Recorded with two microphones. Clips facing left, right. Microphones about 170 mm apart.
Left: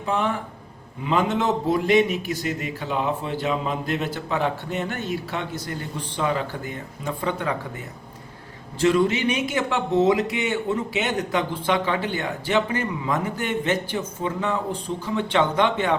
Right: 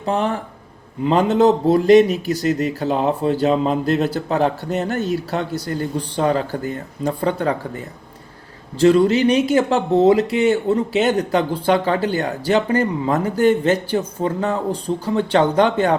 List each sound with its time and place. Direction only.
0.0 s speech: 35° right (ahead or behind)
8.8 s speech: 35° right (ahead or behind)